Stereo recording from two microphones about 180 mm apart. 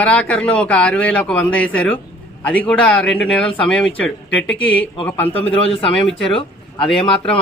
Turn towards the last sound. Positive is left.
turn(degrees=30)  # may be behind; listen again after turning